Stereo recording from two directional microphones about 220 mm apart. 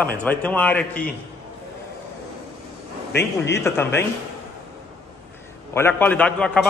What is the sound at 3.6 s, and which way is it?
Speech, 10° left (ahead or behind).